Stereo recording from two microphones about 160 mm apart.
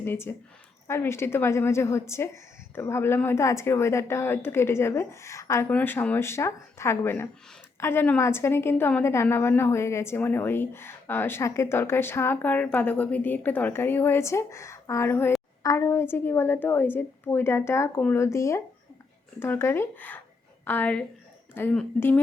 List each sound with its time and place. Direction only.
0.0 s a woman's voice: 15° left (ahead or behind)